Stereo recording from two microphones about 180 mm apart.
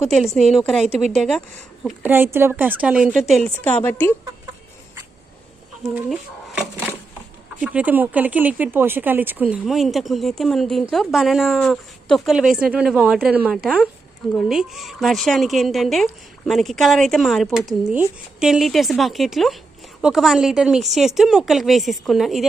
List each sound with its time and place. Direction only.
0.1 s a woman's voice: centre (ahead or behind)
1.8 s a woman's voice: 10° right (ahead or behind); by 4.1 s 10° left (ahead or behind)
6.1 s a woman's voice: 5° right (ahead or behind)